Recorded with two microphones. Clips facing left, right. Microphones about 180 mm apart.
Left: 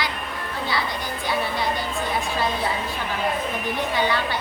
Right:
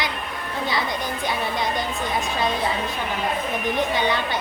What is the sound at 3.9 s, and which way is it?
Speech, 20° right (ahead or behind).